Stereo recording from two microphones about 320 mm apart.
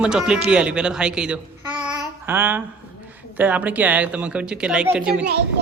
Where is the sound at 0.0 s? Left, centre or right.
Centre.